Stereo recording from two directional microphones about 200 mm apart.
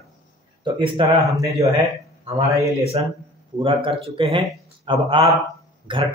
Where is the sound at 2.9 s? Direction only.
30° right (ahead or behind).